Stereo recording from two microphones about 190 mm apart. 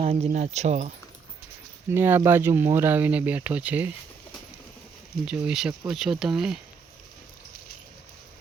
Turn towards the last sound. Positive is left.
turn(degrees=-5)  # may be behind; listen again after turning